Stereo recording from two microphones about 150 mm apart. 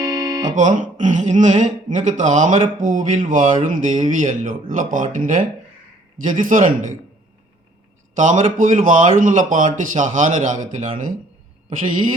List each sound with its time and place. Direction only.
0.3 s music: 25° right (ahead or behind)
0.5 s speech: 55° right (ahead or behind)
8.1 s speech: 55° right (ahead or behind)